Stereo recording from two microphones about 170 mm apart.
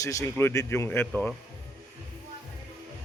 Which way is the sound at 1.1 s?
Centre (ahead or behind).